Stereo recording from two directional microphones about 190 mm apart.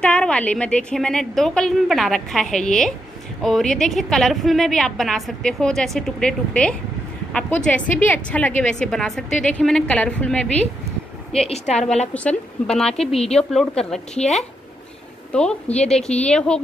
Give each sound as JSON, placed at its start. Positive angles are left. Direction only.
{"t": 0.0, "sound": "a woman's voice", "side_deg": 5}
{"t": 11.4, "sound": "a woman's voice", "side_deg": 35}
{"t": 12.1, "sound": "a woman's voice", "side_deg": 5}
{"t": 13.1, "sound": "a woman's voice", "side_deg": 30}
{"t": 13.4, "sound": "a woman's voice", "side_deg": 5}
{"t": 15.7, "sound": "a woman's voice", "side_deg": 5}